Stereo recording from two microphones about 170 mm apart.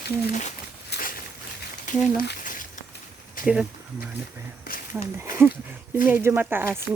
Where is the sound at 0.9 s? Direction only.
60° left (ahead or behind).